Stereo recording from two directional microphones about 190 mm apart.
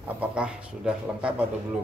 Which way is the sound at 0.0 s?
5° right (ahead or behind).